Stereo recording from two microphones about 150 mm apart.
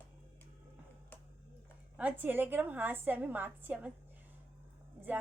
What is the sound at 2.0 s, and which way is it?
Speech, 10° right (ahead or behind).